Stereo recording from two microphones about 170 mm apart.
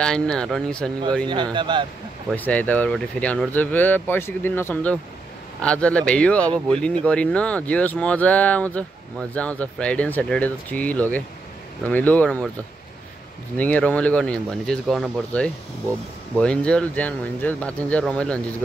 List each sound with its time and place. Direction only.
0.0 s speech: 5° left (ahead or behind)
1.2 s speech: 25° right (ahead or behind)
2.3 s speech: 10° left (ahead or behind)
13.6 s speech: 10° left (ahead or behind)